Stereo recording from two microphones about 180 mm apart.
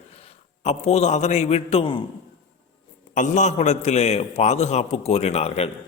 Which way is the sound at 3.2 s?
40° left (ahead or behind).